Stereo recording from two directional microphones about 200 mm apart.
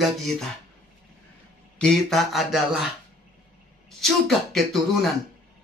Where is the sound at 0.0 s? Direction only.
Centre (ahead or behind).